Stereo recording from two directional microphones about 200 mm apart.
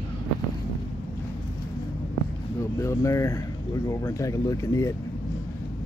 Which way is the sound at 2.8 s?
15° left (ahead or behind).